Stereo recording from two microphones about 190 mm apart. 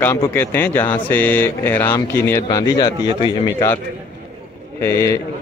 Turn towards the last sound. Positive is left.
turn(degrees=15)  # may be behind; listen again after turning